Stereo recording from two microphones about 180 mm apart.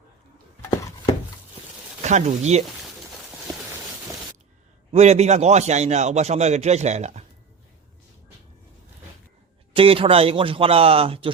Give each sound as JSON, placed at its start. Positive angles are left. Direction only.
{"t": 2.0, "sound": "speech", "side_deg": -40}
{"t": 4.9, "sound": "a man's voice", "side_deg": -40}
{"t": 9.7, "sound": "a man's voice", "side_deg": -30}